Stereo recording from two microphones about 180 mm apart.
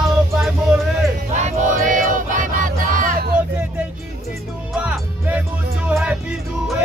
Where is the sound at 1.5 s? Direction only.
45° right (ahead or behind).